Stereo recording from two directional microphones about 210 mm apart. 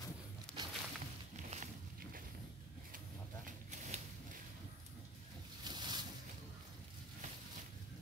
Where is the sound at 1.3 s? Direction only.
35° right (ahead or behind).